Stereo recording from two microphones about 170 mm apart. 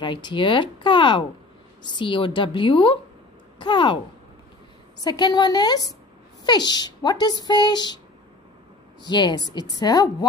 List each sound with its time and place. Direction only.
0.0 s speech: 25° left (ahead or behind)
5.0 s speech: 25° left (ahead or behind)
9.0 s speech: 25° left (ahead or behind)